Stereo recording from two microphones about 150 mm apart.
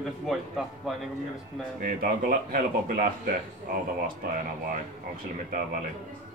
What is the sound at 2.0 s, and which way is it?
Speech, 70° right (ahead or behind).